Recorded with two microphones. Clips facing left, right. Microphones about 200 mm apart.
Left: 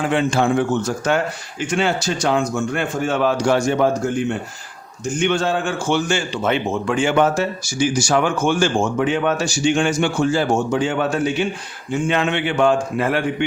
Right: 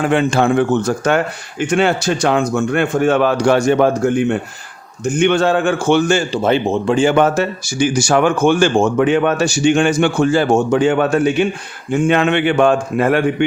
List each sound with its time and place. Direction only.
0.0 s speech: 55° right (ahead or behind)
6.1 s speech: 35° right (ahead or behind)
7.1 s speech: 60° right (ahead or behind)